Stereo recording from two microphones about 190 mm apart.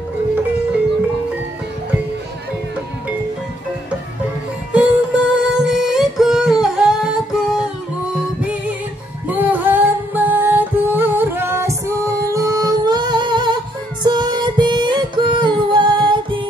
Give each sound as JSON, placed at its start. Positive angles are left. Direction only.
{"t": 4.7, "sound": "music", "side_deg": -5}
{"t": 9.3, "sound": "music", "side_deg": -10}